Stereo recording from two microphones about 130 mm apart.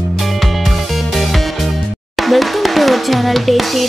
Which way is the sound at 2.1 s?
Centre (ahead or behind).